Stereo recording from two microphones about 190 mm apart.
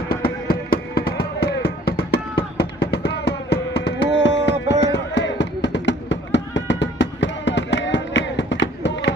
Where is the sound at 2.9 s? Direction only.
60° left (ahead or behind).